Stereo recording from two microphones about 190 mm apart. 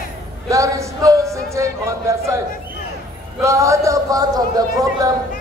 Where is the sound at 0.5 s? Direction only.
15° right (ahead or behind).